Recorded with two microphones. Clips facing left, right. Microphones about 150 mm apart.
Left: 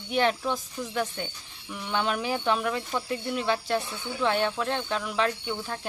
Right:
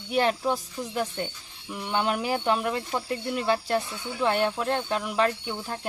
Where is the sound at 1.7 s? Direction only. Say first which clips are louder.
Right 2 dB; 5° right (ahead or behind).